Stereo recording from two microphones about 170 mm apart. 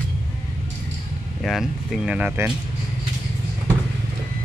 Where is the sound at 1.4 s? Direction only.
Centre (ahead or behind).